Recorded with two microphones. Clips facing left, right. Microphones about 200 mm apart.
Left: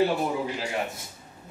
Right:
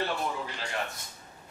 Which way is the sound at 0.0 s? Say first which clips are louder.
Left 8 dB; 10° left (ahead or behind).